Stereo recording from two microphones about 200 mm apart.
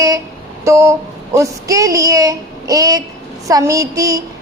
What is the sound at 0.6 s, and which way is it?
Speech, 15° right (ahead or behind).